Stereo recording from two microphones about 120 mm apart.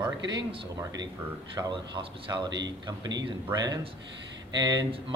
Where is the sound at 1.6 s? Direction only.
40° right (ahead or behind).